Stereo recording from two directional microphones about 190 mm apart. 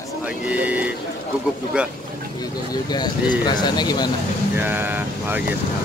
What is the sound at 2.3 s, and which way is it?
Speech, 20° left (ahead or behind).